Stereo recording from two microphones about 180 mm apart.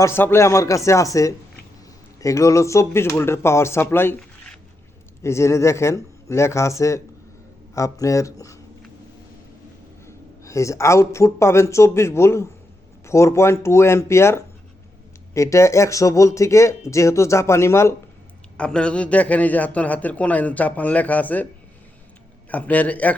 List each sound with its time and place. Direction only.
0.0 s a man's voice: 15° left (ahead or behind)
10.1 s a man's voice: 15° left (ahead or behind)
22.4 s a man's voice: 10° left (ahead or behind)